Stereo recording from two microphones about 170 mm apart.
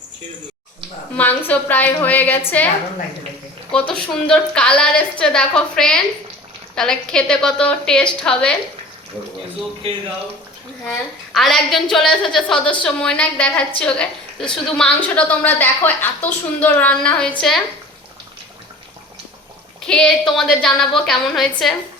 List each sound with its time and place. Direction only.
1.1 s a woman's voice: 10° left (ahead or behind)
3.7 s a woman's voice: 5° left (ahead or behind)
9.8 s speech: 35° right (ahead or behind)
10.8 s a woman's voice: 5° left (ahead or behind)
19.8 s a woman's voice: 5° left (ahead or behind)